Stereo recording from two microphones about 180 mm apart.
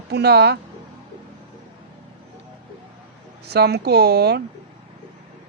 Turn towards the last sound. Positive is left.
turn(degrees=-65)  # may be behind; listen again after turning